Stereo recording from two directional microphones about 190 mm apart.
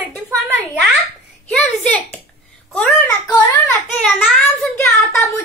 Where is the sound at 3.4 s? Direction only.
10° left (ahead or behind).